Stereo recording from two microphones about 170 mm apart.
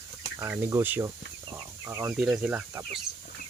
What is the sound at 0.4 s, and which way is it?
Speech, 10° right (ahead or behind).